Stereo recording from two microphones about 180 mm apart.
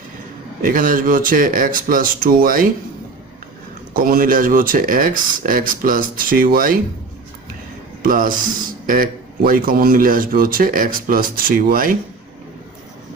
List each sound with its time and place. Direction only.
0.6 s a man's voice: 50° right (ahead or behind)
3.9 s a man's voice: 50° right (ahead or behind)
8.0 s a man's voice: 50° right (ahead or behind)